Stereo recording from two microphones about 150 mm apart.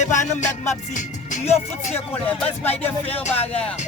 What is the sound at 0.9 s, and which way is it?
Speech, 55° left (ahead or behind).